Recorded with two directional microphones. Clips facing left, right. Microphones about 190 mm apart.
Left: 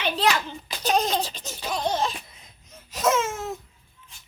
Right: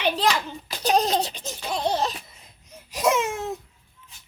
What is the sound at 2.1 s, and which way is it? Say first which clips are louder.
Baby cry: left 1 dB; 10° right (ahead or behind).